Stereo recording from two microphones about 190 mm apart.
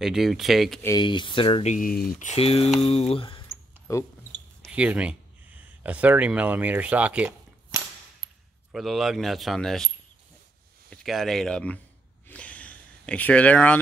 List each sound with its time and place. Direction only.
0.0 s speech: centre (ahead or behind)
0.8 s speech: 25° left (ahead or behind)
3.9 s speech: 15° left (ahead or behind)
4.7 s speech: 5° right (ahead or behind)
10.9 s speech: centre (ahead or behind)
12.3 s a sound: 5° left (ahead or behind)